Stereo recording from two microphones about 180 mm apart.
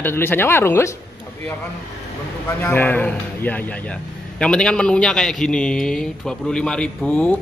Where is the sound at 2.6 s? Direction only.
10° left (ahead or behind).